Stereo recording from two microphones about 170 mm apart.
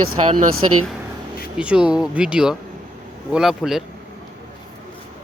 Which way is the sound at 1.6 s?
5° right (ahead or behind).